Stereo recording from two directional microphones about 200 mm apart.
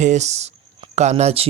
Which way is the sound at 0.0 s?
35° right (ahead or behind).